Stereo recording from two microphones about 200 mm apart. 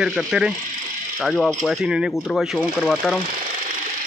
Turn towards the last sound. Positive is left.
turn(degrees=0)  # may be behind; listen again after turning